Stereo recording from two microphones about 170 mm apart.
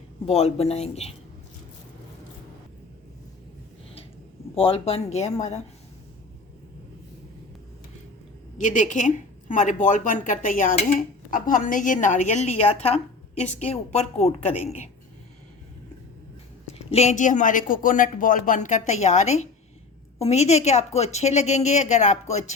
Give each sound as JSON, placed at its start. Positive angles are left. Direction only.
{"t": 0.3, "sound": "a woman's voice", "side_deg": 40}
{"t": 4.5, "sound": "a woman's voice", "side_deg": 35}
{"t": 8.5, "sound": "a woman's voice", "side_deg": 45}
{"t": 16.6, "sound": "a woman's voice", "side_deg": 40}